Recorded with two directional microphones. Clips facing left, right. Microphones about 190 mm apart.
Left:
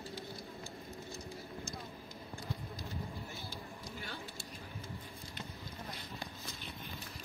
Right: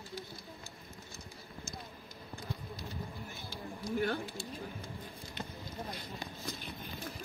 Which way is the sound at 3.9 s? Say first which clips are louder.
Right 15 dB; 55° right (ahead or behind).